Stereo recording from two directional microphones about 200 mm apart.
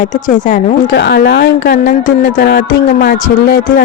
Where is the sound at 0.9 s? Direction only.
55° left (ahead or behind).